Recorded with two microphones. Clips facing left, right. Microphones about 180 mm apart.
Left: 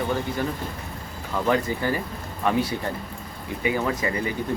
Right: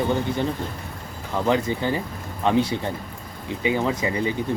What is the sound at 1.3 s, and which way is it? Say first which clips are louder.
Speech: right 1 dB; 20° right (ahead or behind).